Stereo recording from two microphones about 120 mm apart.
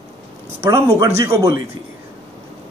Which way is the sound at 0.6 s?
25° right (ahead or behind).